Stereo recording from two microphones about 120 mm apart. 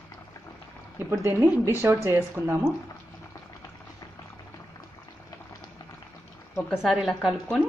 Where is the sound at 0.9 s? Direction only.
20° right (ahead or behind).